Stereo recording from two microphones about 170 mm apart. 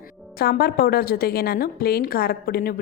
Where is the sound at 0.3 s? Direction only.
65° left (ahead or behind).